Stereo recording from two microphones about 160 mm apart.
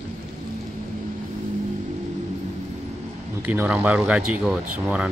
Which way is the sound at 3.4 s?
10° right (ahead or behind).